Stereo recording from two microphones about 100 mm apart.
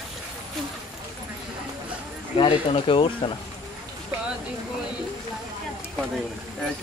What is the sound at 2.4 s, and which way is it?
Speech, 60° left (ahead or behind).